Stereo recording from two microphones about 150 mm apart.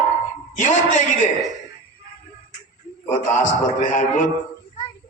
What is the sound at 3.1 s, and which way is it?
A man's voice, 55° left (ahead or behind).